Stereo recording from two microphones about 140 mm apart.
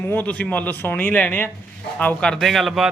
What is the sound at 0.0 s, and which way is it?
A man's voice, 15° left (ahead or behind).